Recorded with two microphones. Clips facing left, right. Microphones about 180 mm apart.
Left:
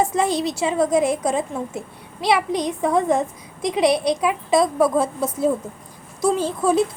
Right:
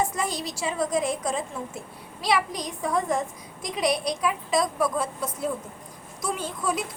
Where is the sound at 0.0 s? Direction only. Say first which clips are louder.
Left 8 dB; 25° left (ahead or behind).